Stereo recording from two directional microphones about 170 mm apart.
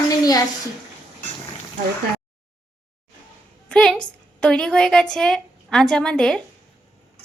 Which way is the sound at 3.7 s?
5° left (ahead or behind).